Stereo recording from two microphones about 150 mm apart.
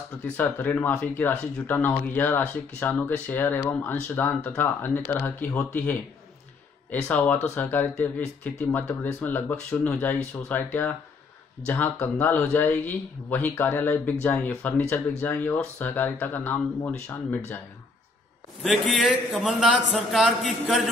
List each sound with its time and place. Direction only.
0.4 s speech: 10° left (ahead or behind)
18.6 s a man's voice: centre (ahead or behind)